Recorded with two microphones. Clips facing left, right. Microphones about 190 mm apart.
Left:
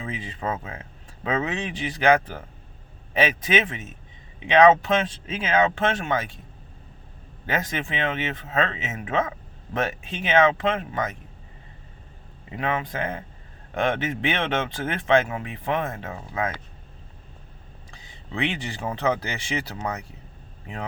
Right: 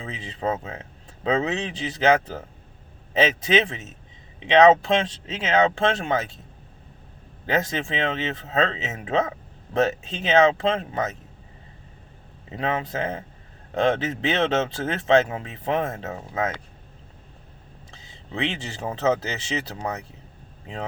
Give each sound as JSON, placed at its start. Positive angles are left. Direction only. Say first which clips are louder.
{"t": 0.0, "sound": "speech", "louder": "right 2 dB", "side_deg": -25}
{"t": 7.4, "sound": "speech", "louder": "right 3 dB", "side_deg": -30}
{"t": 12.5, "sound": "speech", "louder": "right 1 dB", "side_deg": -30}
{"t": 17.9, "sound": "a sound", "louder": "even", "side_deg": -25}
{"t": 18.9, "sound": "speech", "louder": "right 2 dB", "side_deg": -25}